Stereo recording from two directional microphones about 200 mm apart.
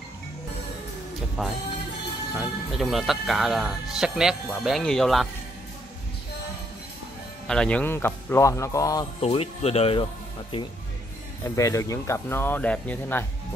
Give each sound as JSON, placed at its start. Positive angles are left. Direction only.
{"t": 1.4, "sound": "speech", "side_deg": 0}
{"t": 7.4, "sound": "speech", "side_deg": 5}
{"t": 9.2, "sound": "speech", "side_deg": 30}
{"t": 11.4, "sound": "speech", "side_deg": 15}